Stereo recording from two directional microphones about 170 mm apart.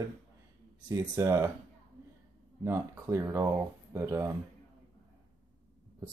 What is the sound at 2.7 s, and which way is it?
Speech, 15° right (ahead or behind).